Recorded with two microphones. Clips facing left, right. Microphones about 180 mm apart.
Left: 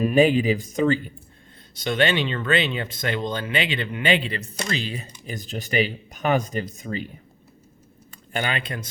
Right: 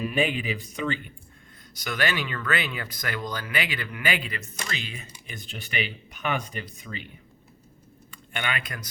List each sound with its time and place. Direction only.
0.0 s speech: 40° left (ahead or behind)
1.7 s speech: 30° left (ahead or behind)
8.1 s speech: 35° left (ahead or behind)